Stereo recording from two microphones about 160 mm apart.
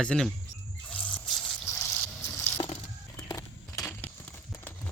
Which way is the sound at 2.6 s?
30° left (ahead or behind).